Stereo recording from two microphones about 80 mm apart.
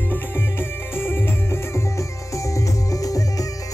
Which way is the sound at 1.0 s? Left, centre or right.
Left.